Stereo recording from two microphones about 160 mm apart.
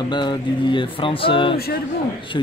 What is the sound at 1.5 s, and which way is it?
Speech, 75° left (ahead or behind).